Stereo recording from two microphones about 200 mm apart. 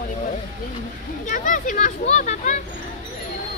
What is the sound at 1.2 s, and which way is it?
A child's voice, 40° left (ahead or behind).